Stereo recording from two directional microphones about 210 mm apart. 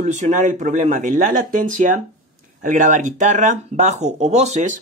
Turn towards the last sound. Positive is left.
turn(degrees=-35)  # may be behind; listen again after turning